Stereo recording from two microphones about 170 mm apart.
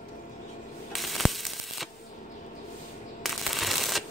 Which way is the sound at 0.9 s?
Centre (ahead or behind).